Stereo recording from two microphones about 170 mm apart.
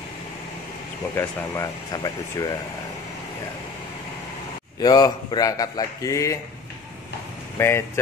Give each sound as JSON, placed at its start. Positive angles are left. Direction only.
{"t": 1.1, "sound": "a man's voice", "side_deg": 15}
{"t": 4.8, "sound": "a man's voice", "side_deg": 25}
{"t": 7.5, "sound": "speech", "side_deg": 15}